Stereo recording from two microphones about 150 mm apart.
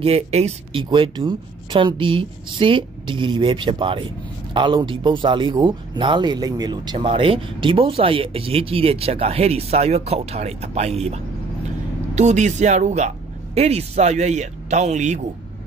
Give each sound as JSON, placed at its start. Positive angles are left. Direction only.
{"t": 0.0, "sound": "speech", "side_deg": -45}
{"t": 0.8, "sound": "speech", "side_deg": -30}
{"t": 12.2, "sound": "speech", "side_deg": -50}